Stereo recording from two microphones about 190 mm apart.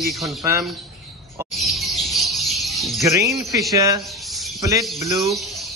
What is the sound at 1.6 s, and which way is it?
Bird, centre (ahead or behind).